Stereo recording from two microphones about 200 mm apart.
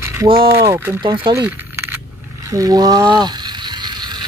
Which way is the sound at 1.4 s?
10° right (ahead or behind).